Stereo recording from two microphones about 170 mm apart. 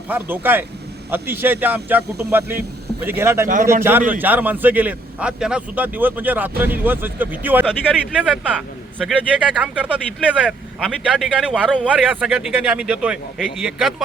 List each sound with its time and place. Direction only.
0.1 s a man's voice: 10° right (ahead or behind)
3.4 s a man's voice: 55° right (ahead or behind)
3.8 s a man's voice: 10° right (ahead or behind)